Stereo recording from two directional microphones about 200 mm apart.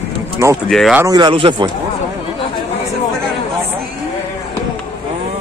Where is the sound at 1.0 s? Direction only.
20° right (ahead or behind).